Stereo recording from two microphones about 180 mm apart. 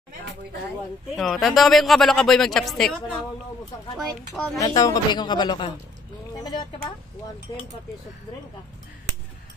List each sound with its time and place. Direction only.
1.1 s speech: centre (ahead or behind)
3.9 s speech: centre (ahead or behind)
4.6 s speech: 20° left (ahead or behind)